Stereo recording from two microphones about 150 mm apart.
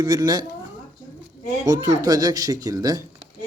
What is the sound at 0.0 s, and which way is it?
Speech, 25° right (ahead or behind).